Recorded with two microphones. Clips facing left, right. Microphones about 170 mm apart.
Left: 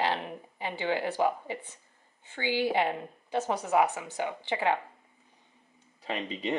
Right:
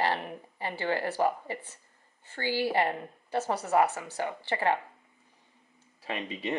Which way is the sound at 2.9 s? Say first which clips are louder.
Even; 10° left (ahead or behind).